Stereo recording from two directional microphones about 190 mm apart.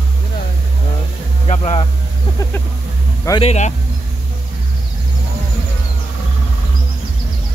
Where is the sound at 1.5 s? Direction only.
25° left (ahead or behind).